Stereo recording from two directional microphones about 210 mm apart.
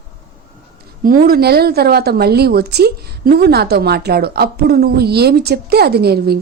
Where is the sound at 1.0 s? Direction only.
40° right (ahead or behind).